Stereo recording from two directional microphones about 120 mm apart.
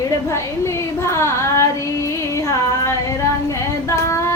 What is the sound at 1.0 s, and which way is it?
Child singing, 25° left (ahead or behind).